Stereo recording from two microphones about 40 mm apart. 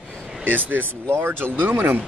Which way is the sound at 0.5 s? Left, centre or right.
Right.